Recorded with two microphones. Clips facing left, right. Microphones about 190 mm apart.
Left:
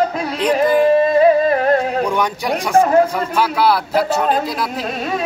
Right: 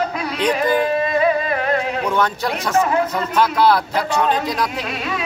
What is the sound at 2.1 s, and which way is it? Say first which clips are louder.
Speech: left 1 dB; 15° left (ahead or behind).